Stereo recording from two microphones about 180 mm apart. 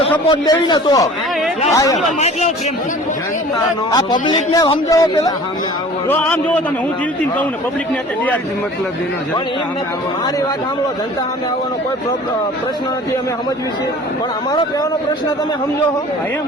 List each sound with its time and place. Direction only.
0.3 s a man's voice: 25° left (ahead or behind)
2.1 s speech: 40° left (ahead or behind)
3.9 s a man's voice: 25° left (ahead or behind)
6.1 s a man's voice: 10° left (ahead or behind)